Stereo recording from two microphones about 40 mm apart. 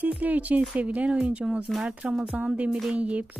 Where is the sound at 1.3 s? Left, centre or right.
Right.